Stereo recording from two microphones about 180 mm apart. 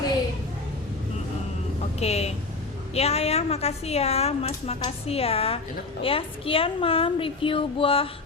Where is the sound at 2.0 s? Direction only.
35° left (ahead or behind).